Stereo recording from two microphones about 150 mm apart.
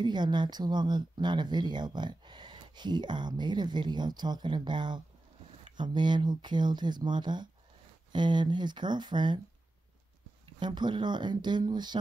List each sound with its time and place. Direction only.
0.0 s speech: 30° right (ahead or behind)
10.6 s speech: 30° right (ahead or behind)